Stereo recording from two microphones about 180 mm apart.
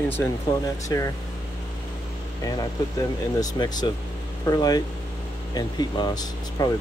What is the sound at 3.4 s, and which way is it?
Speech, 20° left (ahead or behind).